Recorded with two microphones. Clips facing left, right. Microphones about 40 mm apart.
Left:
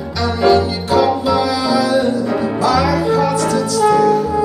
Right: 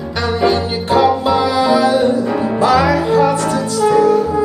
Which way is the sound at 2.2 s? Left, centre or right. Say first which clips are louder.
Right 1 dB; centre.